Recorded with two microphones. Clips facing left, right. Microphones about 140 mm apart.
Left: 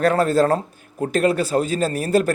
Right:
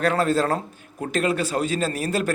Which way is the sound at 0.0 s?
45° left (ahead or behind).